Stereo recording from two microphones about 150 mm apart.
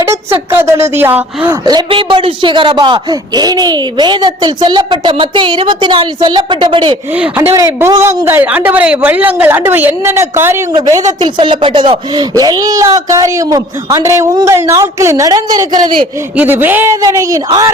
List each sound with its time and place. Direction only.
0.3 s a woman's voice: 15° right (ahead or behind)
1.6 s a man's voice: 30° right (ahead or behind)
7.2 s a woman's voice: 15° right (ahead or behind)
11.2 s speech: 35° right (ahead or behind)
16.4 s speech: 15° right (ahead or behind)